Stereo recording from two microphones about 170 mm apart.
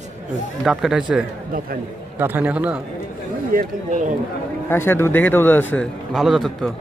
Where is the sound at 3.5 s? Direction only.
55° right (ahead or behind).